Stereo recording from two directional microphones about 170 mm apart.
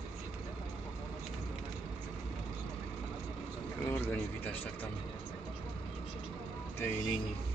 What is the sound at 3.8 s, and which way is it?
Speech, 15° left (ahead or behind).